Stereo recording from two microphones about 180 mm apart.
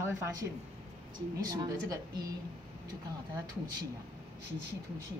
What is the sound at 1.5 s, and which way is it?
Speech, 20° right (ahead or behind).